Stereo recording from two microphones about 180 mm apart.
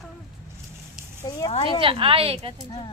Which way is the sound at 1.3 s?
25° left (ahead or behind).